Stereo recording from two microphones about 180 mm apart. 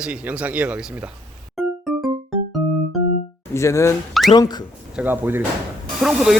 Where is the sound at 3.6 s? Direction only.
15° left (ahead or behind).